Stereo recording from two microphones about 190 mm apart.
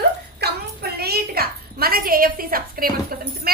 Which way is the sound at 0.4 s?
55° right (ahead or behind).